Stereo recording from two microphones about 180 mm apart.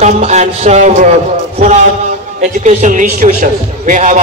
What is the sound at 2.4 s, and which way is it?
A man's voice, 45° right (ahead or behind).